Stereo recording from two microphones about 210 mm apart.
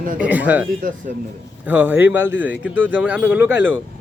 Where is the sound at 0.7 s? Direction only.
40° right (ahead or behind).